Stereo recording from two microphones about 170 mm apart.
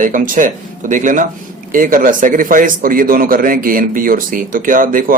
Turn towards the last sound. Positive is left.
turn(degrees=-55)  # may be behind; listen again after turning